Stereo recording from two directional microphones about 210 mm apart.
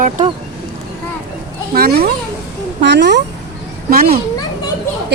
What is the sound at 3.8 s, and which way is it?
Speech, 45° right (ahead or behind).